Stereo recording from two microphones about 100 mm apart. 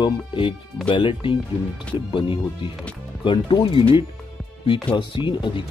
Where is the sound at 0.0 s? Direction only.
55° left (ahead or behind).